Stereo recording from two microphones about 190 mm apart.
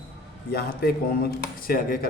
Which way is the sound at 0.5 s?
55° left (ahead or behind).